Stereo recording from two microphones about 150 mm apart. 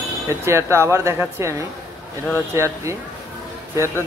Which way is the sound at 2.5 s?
20° right (ahead or behind).